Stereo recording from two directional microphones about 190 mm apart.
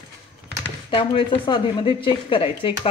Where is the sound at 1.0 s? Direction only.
25° left (ahead or behind).